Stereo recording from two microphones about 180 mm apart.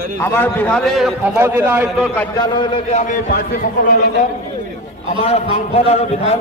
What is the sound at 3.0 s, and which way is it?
Speech, 50° left (ahead or behind).